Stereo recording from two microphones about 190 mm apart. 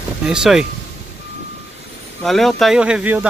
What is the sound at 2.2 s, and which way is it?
Speech, centre (ahead or behind).